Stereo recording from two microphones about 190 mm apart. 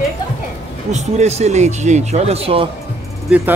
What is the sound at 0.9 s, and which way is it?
Speech, 35° right (ahead or behind).